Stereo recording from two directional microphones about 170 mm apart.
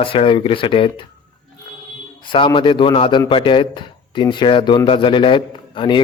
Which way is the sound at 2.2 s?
30° left (ahead or behind).